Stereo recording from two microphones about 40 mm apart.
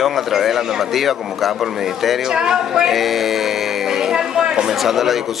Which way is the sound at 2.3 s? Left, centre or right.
Centre.